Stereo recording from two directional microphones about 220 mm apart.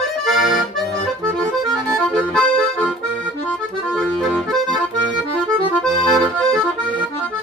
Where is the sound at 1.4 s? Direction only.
5° left (ahead or behind).